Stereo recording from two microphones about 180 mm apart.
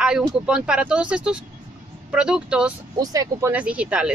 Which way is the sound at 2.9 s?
20° right (ahead or behind).